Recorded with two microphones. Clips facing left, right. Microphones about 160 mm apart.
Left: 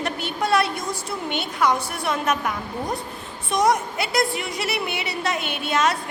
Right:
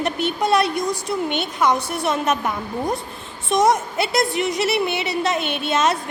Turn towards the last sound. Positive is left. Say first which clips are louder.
# right 2 dB
turn(degrees=-25)  # may be behind; listen again after turning